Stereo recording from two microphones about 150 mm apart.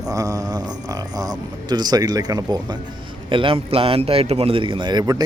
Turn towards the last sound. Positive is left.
turn(degrees=-25)  # may be behind; listen again after turning